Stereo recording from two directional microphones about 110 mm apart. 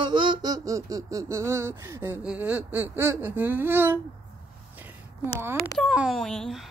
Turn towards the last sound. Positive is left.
turn(degrees=5)  # may be behind; listen again after turning